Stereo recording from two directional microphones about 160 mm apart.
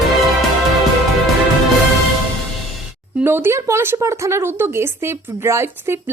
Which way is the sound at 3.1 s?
15° right (ahead or behind).